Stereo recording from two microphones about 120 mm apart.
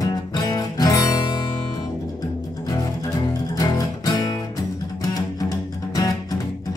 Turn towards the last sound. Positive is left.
turn(degrees=30)  # may be behind; listen again after turning